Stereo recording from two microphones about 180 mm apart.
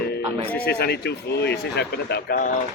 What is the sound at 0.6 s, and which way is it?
Speech, 60° left (ahead or behind).